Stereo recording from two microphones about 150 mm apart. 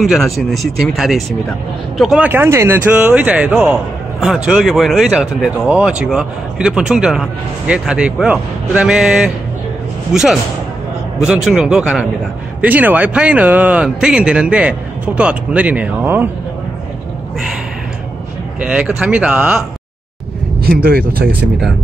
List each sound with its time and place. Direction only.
0.0 s speech: centre (ahead or behind)
18.6 s speech: 10° right (ahead or behind)
20.6 s speech: 85° right